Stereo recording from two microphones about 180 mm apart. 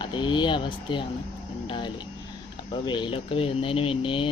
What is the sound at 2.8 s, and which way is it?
Speech, 25° left (ahead or behind).